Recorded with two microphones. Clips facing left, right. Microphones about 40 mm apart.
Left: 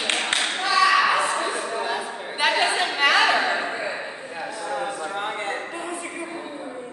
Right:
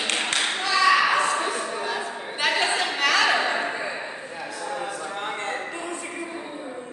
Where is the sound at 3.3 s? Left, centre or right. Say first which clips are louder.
Left 1 dB; centre.